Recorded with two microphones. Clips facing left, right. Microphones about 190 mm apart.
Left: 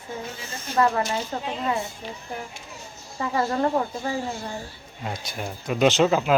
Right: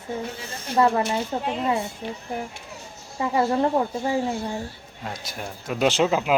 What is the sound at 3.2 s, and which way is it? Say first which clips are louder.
Speech: right 3 dB; 20° right (ahead or behind).